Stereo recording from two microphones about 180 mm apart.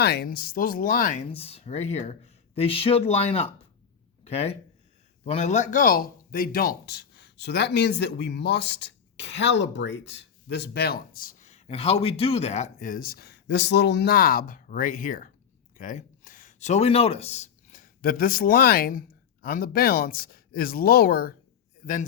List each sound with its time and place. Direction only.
0.0 s speech: 60° left (ahead or behind)